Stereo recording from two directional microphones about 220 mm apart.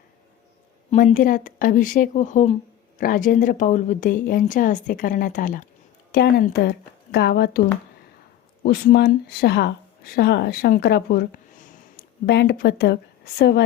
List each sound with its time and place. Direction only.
0.9 s speech: 35° left (ahead or behind)
8.6 s speech: 45° left (ahead or behind)
12.2 s speech: 50° left (ahead or behind)